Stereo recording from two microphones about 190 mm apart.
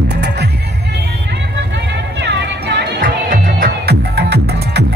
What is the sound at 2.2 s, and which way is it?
Music, 60° right (ahead or behind).